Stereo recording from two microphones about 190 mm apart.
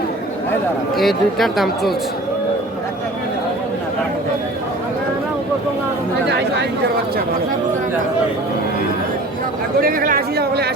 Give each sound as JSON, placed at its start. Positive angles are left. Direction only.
{"t": 0.9, "sound": "speech", "side_deg": 0}
{"t": 6.2, "sound": "speech", "side_deg": -65}
{"t": 9.8, "sound": "speech", "side_deg": -50}